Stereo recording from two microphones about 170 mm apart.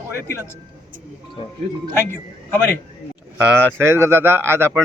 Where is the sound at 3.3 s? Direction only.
10° right (ahead or behind).